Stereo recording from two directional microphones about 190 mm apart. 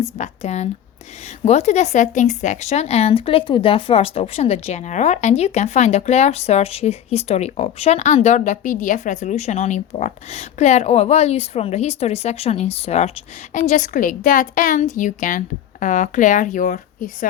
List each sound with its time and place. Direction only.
0.0 s speech: 35° left (ahead or behind)